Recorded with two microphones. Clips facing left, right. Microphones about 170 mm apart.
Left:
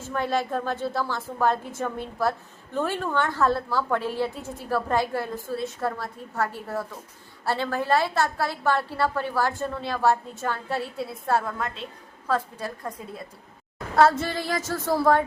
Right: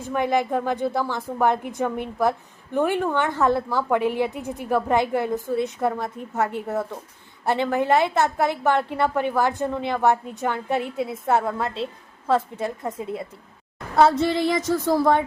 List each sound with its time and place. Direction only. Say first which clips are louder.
0.0 s a woman's voice: right 4 dB; 15° right (ahead or behind)